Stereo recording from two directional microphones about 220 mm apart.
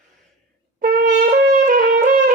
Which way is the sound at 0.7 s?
40° right (ahead or behind).